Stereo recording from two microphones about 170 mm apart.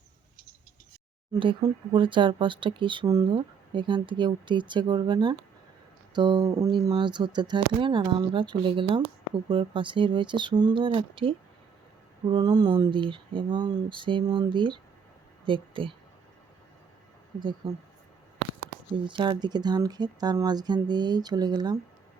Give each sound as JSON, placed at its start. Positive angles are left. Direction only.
{"t": 1.3, "sound": "speech", "side_deg": -25}
{"t": 19.0, "sound": "speech", "side_deg": -30}